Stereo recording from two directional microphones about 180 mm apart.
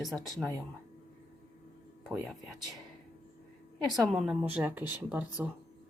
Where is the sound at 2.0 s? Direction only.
Centre (ahead or behind).